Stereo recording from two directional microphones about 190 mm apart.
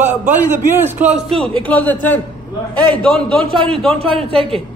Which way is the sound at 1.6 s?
10° left (ahead or behind).